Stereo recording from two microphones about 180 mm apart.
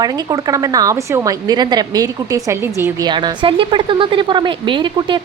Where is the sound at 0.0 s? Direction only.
20° right (ahead or behind).